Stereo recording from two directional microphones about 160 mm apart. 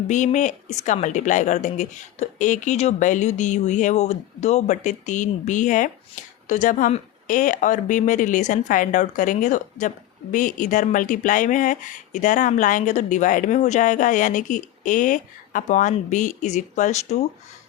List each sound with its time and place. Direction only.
0.1 s speech: 50° left (ahead or behind)